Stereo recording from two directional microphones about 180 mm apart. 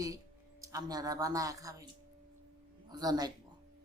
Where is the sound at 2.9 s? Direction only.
20° right (ahead or behind).